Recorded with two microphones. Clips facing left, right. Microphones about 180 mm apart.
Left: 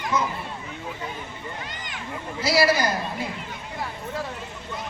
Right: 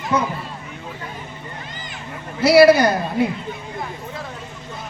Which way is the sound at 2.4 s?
65° right (ahead or behind).